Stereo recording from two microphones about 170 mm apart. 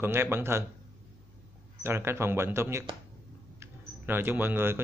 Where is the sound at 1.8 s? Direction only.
15° right (ahead or behind).